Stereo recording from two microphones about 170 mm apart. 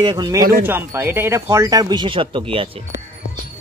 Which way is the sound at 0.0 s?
25° right (ahead or behind).